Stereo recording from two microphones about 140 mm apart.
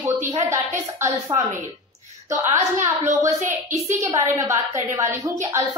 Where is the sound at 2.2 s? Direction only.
25° right (ahead or behind).